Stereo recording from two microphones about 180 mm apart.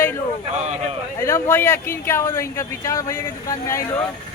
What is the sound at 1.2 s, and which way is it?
Speech, 15° left (ahead or behind).